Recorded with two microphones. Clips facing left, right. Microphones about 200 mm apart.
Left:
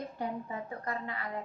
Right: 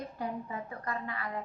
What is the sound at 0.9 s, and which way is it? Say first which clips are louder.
Speech: right 1 dB; 25° left (ahead or behind).